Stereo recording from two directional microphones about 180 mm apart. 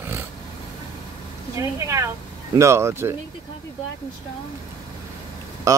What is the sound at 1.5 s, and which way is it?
Speech, 15° right (ahead or behind).